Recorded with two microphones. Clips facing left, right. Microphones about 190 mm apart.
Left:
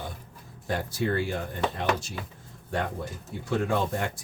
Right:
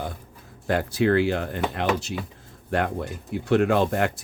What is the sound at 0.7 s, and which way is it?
Speech, 70° right (ahead or behind).